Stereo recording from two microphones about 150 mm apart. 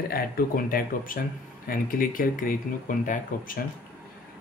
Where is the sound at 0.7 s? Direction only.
70° left (ahead or behind).